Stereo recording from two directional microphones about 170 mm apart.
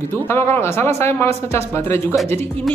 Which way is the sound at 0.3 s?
15° left (ahead or behind).